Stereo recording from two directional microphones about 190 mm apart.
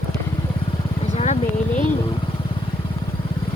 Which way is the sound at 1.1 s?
35° left (ahead or behind).